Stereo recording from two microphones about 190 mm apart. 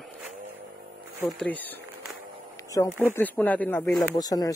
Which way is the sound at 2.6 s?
15° left (ahead or behind).